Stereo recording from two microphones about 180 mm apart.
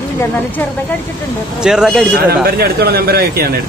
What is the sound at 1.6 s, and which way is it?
Speech, 5° right (ahead or behind).